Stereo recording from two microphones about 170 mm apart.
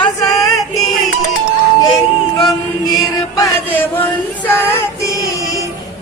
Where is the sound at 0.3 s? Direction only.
Centre (ahead or behind).